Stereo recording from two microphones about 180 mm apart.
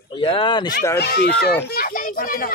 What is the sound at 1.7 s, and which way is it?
Children playing, 55° left (ahead or behind).